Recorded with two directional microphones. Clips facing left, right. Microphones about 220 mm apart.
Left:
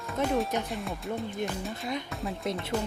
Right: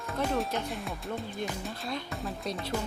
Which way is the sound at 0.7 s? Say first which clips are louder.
Left 2 dB; centre (ahead or behind).